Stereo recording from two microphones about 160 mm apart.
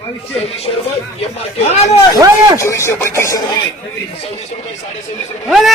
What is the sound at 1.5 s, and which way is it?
Speech, 40° left (ahead or behind).